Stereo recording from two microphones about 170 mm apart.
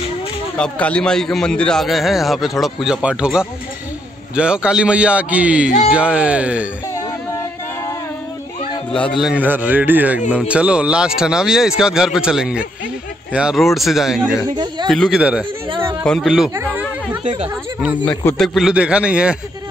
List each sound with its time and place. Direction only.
0.6 s a man's voice: 5° left (ahead or behind)
8.9 s a man's voice: 5° left (ahead or behind)
15.7 s a sound: 30° right (ahead or behind)
16.0 s a man's voice: centre (ahead or behind)
16.5 s a sound: 10° right (ahead or behind)
17.2 s speech: 30° right (ahead or behind)
18.0 s a man's voice: 5° left (ahead or behind)